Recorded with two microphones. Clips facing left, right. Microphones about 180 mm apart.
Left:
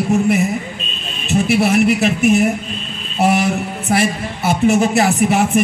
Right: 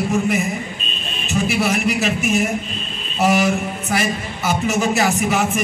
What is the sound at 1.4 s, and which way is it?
Speech, 60° left (ahead or behind).